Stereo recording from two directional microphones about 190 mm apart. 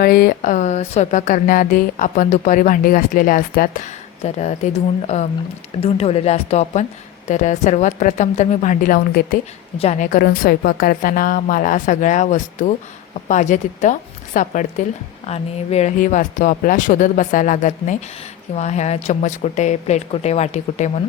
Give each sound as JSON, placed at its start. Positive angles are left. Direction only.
{"t": 0.0, "sound": "speech", "side_deg": 50}
{"t": 4.2, "sound": "speech", "side_deg": 35}
{"t": 9.7, "sound": "speech", "side_deg": 35}